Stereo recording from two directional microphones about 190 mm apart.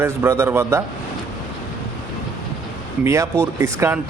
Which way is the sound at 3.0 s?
15° right (ahead or behind).